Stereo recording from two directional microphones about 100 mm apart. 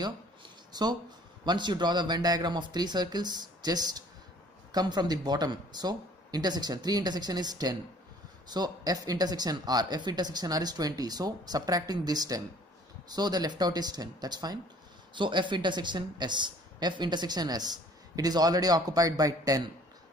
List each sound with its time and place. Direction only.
0.0 s a sound: 45° right (ahead or behind)
1.4 s speech: 45° right (ahead or behind)
15.1 s speech: 50° right (ahead or behind); by 19.7 s 35° right (ahead or behind)